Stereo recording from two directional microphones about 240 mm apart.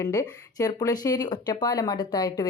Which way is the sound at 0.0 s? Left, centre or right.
Centre.